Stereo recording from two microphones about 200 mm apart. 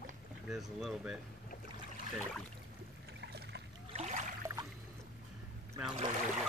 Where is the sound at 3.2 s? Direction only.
60° right (ahead or behind).